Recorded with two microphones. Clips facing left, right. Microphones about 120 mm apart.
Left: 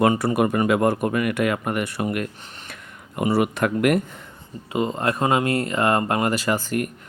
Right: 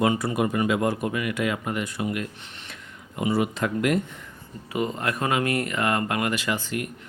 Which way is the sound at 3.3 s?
65° left (ahead or behind).